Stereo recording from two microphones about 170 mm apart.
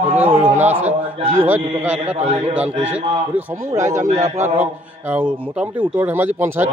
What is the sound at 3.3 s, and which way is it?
Speech, 15° right (ahead or behind).